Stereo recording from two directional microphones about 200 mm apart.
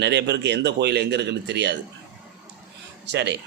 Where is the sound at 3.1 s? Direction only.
60° right (ahead or behind).